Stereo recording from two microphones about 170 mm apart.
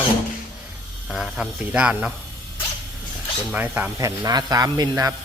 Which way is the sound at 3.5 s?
10° right (ahead or behind).